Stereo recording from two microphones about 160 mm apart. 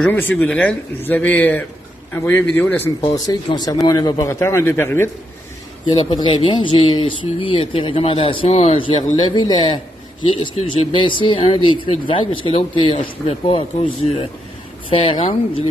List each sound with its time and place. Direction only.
0.0 s speech: 10° left (ahead or behind)
3.3 s speech: 25° left (ahead or behind)
5.9 s speech: 30° left (ahead or behind)